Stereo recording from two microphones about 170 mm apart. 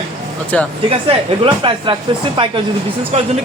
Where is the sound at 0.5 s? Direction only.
5° left (ahead or behind).